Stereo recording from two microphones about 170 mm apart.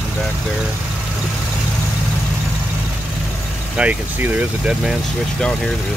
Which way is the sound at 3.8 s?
10° right (ahead or behind).